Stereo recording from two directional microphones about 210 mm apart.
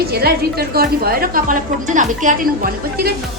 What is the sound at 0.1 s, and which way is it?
A woman's voice, 50° right (ahead or behind).